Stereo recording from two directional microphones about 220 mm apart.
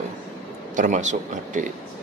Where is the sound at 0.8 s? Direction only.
35° right (ahead or behind).